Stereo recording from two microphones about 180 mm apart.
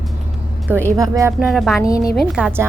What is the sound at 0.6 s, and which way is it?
Speech, 15° right (ahead or behind).